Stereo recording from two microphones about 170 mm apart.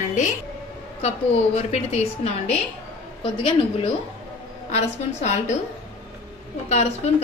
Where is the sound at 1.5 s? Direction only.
40° left (ahead or behind).